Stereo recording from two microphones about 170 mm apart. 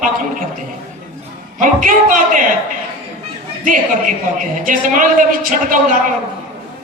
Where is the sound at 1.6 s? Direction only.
50° right (ahead or behind).